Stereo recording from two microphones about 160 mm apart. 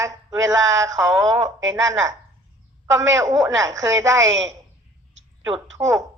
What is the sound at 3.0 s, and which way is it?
Speech, 20° right (ahead or behind).